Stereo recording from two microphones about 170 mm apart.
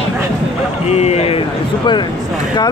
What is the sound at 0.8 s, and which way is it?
Speech, 40° left (ahead or behind).